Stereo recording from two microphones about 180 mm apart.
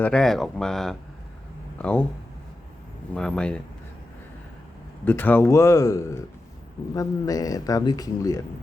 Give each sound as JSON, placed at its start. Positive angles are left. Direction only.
{"t": 0.0, "sound": "speech", "side_deg": 5}
{"t": 3.2, "sound": "speech", "side_deg": 5}
{"t": 5.0, "sound": "speech", "side_deg": 10}